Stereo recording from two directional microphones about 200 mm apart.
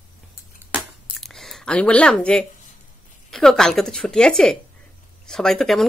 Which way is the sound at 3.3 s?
Centre (ahead or behind).